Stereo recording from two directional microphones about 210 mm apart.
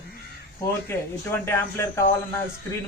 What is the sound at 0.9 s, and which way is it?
A man's voice, 10° left (ahead or behind).